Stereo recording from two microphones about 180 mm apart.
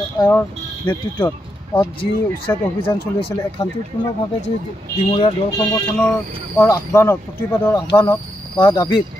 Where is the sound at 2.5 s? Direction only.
15° left (ahead or behind).